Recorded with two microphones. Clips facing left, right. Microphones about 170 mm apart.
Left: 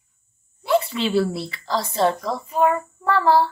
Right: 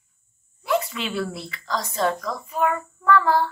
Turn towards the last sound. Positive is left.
turn(degrees=30)  # may be behind; listen again after turning